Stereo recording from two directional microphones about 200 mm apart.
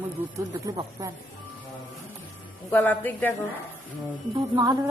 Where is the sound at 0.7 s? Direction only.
15° right (ahead or behind).